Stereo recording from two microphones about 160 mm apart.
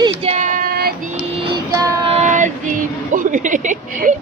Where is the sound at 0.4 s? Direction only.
65° right (ahead or behind).